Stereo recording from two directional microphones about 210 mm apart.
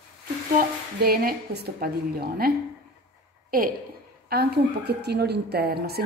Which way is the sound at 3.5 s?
45° right (ahead or behind).